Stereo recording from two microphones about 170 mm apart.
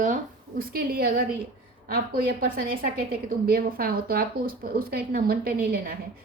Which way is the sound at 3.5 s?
60° right (ahead or behind).